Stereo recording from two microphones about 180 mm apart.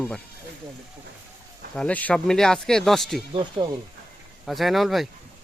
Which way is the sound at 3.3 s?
30° right (ahead or behind).